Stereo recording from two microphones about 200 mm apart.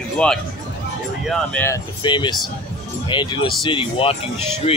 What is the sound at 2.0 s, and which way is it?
Speech, 25° left (ahead or behind).